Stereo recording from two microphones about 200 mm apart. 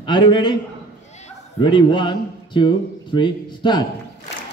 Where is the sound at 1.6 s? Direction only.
25° left (ahead or behind).